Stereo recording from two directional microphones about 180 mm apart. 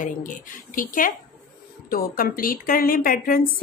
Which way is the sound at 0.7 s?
50° left (ahead or behind).